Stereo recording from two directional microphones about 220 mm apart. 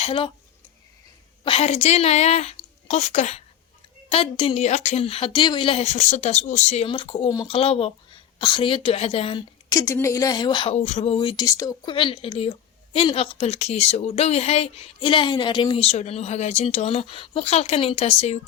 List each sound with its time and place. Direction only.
0.0 s a woman's voice: 25° left (ahead or behind)
1.5 s a woman's voice: 25° left (ahead or behind)